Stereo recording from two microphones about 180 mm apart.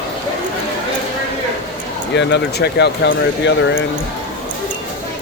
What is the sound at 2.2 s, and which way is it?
Speech, 75° left (ahead or behind).